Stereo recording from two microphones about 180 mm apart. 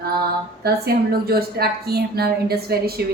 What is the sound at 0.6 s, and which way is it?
A woman's voice, 60° right (ahead or behind).